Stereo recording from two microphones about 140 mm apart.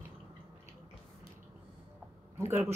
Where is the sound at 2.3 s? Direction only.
15° right (ahead or behind).